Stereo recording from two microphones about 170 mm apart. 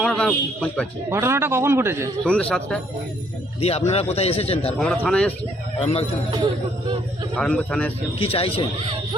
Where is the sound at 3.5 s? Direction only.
35° left (ahead or behind).